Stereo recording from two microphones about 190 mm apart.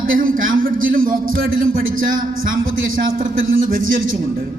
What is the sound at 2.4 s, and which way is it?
A man's voice, 90° right.